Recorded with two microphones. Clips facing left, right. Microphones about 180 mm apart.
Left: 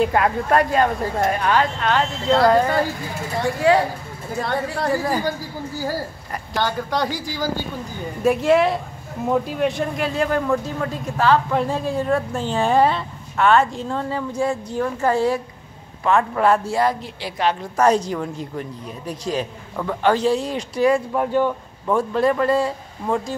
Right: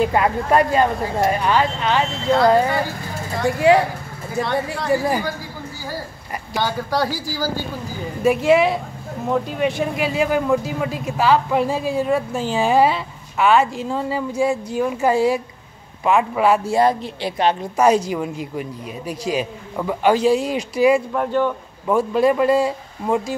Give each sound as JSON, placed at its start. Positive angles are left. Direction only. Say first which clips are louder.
{"t": 0.0, "sound": "a man's voice", "louder": "even", "side_deg": 0}
{"t": 6.5, "sound": "a man's voice", "louder": "right 1 dB", "side_deg": -5}
{"t": 16.7, "sound": "speech", "louder": "right 3 dB", "side_deg": -25}
{"t": 17.7, "sound": "a man's voice", "louder": "right 1 dB", "side_deg": -5}
{"t": 21.1, "sound": "speech", "louder": "even", "side_deg": 10}
{"t": 21.8, "sound": "a man's voice", "louder": "right 2 dB", "side_deg": -10}